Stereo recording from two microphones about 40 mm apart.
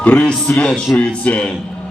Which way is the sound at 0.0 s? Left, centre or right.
Left.